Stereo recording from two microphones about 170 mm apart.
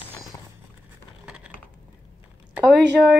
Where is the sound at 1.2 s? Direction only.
5° right (ahead or behind).